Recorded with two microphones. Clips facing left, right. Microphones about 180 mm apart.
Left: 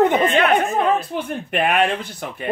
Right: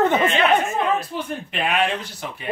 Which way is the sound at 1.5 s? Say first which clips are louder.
Left 4 dB; 55° left (ahead or behind).